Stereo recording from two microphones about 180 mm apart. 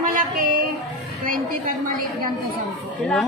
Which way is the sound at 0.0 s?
50° right (ahead or behind).